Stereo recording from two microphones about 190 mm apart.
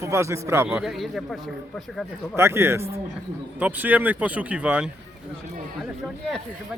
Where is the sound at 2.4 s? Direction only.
15° right (ahead or behind).